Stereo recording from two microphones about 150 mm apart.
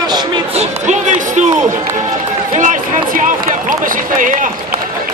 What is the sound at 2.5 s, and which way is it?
Run, 60° right (ahead or behind).